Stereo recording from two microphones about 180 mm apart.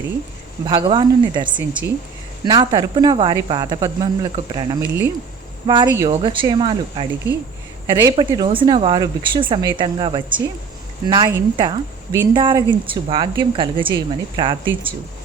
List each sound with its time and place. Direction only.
0.6 s speech: 25° right (ahead or behind)
8.1 s speech: 30° right (ahead or behind)